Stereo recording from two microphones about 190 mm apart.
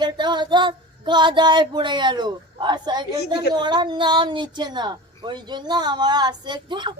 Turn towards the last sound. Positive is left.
turn(degrees=-25)  # may be behind; listen again after turning